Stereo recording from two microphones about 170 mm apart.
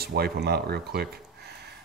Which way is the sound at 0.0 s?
70° right (ahead or behind).